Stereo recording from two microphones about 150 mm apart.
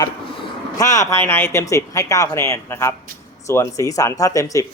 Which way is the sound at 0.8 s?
20° left (ahead or behind).